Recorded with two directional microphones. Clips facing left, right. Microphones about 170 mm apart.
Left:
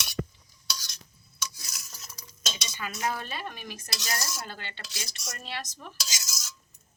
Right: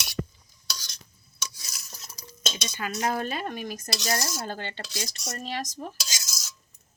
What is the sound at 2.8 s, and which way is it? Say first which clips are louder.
Dishes: right 4 dB; 40° right (ahead or behind).